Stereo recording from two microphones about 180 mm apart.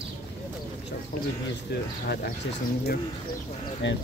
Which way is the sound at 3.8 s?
90° left.